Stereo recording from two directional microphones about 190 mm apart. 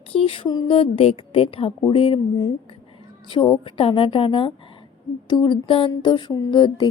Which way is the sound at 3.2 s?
25° left (ahead or behind).